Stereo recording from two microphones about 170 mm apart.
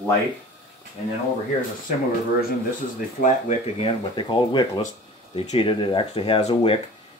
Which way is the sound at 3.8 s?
25° left (ahead or behind).